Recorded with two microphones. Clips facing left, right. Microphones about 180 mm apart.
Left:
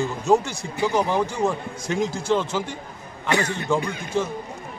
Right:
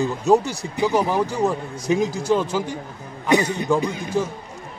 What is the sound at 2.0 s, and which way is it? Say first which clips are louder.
Speech: left 1 dB; 40° right (ahead or behind).